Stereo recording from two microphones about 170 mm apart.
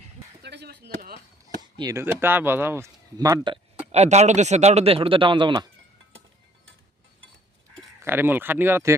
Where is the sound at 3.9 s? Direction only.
40° right (ahead or behind).